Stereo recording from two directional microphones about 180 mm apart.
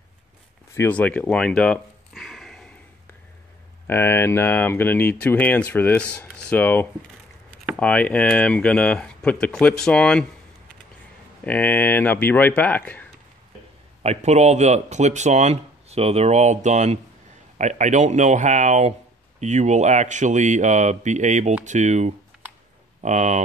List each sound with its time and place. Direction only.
0.7 s a sound: 10° left (ahead or behind)
3.8 s speech: 10° left (ahead or behind)
11.4 s speech: 10° left (ahead or behind)
14.0 s speech: 40° right (ahead or behind)